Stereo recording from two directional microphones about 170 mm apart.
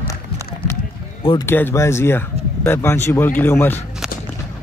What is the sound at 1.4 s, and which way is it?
Speech, 15° left (ahead or behind).